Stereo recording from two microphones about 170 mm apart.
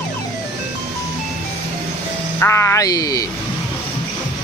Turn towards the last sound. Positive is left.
turn(degrees=20)  # may be behind; listen again after turning